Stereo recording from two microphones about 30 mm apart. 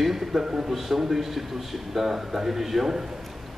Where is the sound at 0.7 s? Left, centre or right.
Centre.